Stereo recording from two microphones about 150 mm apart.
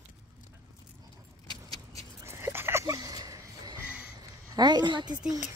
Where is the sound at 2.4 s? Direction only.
15° right (ahead or behind).